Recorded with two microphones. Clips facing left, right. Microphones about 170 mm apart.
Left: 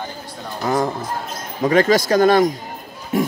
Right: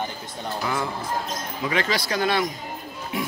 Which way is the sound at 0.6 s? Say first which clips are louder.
Left 9 dB; 40° left (ahead or behind).